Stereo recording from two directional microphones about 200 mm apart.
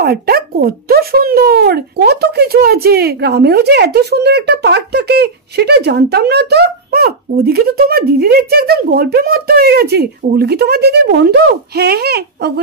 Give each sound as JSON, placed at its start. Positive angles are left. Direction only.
{"t": 0.0, "sound": "speech", "side_deg": -50}